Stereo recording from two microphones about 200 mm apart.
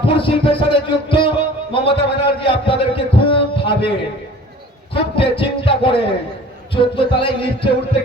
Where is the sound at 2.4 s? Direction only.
25° left (ahead or behind).